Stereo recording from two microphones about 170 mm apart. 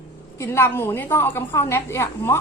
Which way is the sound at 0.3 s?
15° left (ahead or behind).